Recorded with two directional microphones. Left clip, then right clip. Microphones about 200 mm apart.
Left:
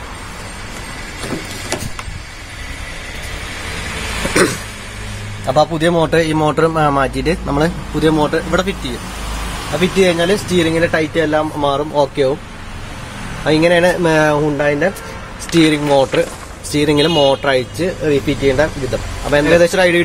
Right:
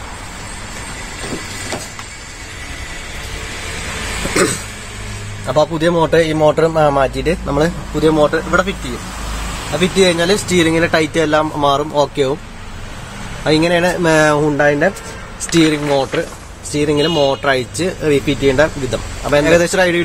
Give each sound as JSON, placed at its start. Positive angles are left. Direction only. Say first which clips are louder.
{"t": 4.3, "sound": "a sound", "louder": "left 1 dB", "side_deg": 15}
{"t": 5.5, "sound": "a man's voice", "louder": "left 1 dB", "side_deg": 10}
{"t": 9.7, "sound": "speech", "louder": "even", "side_deg": 0}
{"t": 13.4, "sound": "speech", "louder": "left 2 dB", "side_deg": 0}
{"t": 16.7, "sound": "speech", "louder": "left 1 dB", "side_deg": 10}